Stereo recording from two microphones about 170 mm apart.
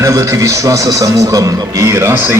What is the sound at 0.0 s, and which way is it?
A man's voice, 15° right (ahead or behind).